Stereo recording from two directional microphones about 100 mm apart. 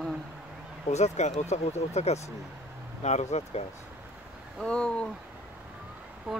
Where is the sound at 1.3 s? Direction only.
90° left.